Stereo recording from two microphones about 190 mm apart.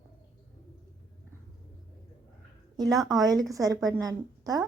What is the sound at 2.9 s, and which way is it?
Speech, centre (ahead or behind).